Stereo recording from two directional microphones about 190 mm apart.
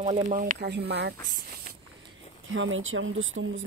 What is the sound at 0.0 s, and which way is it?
Speech, 40° right (ahead or behind).